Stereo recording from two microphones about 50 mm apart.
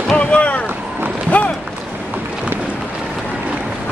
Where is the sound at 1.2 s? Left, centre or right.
Left.